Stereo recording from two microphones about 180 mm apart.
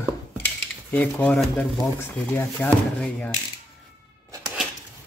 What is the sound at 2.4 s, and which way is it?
Speech, 10° left (ahead or behind).